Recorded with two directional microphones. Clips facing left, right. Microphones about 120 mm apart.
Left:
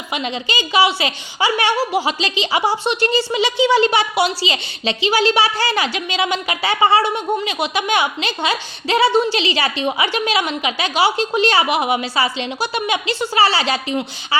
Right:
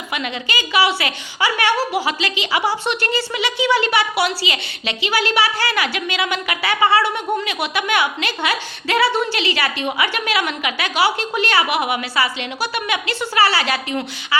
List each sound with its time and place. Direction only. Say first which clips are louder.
0.1 s a woman's voice: left 2 dB; 25° left (ahead or behind)